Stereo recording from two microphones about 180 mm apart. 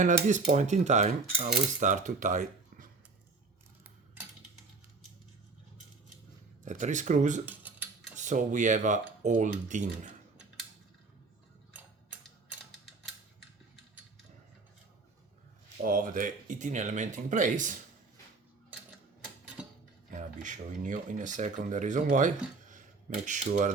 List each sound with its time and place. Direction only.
0.0 s cutlery: 40° right (ahead or behind)
6.7 s cutlery: 45° right (ahead or behind)
7.4 s a sound: 10° right (ahead or behind)
8.1 s cutlery: 40° right (ahead or behind)
15.8 s cutlery: 50° right (ahead or behind)
20.1 s cutlery: 45° right (ahead or behind)
22.7 s speech: 45° right (ahead or behind)